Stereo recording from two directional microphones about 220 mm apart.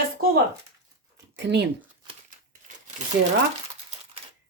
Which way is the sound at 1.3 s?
50° right (ahead or behind).